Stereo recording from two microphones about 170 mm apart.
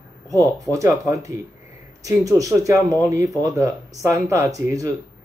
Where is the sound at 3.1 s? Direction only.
20° right (ahead or behind).